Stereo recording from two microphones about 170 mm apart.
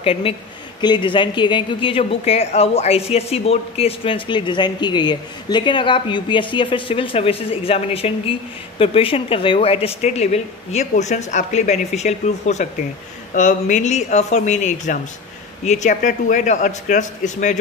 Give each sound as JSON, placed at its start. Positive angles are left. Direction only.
{"t": 0.0, "sound": "a man's voice", "side_deg": 35}